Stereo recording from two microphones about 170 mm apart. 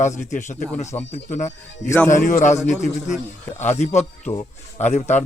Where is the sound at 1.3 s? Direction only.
45° left (ahead or behind).